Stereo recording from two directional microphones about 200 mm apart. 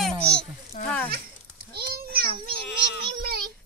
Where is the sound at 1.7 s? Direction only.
50° right (ahead or behind).